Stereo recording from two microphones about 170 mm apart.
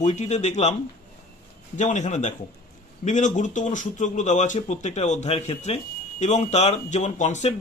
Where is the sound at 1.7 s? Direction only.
45° left (ahead or behind).